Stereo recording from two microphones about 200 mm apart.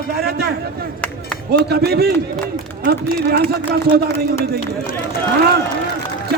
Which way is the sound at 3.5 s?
50° right (ahead or behind).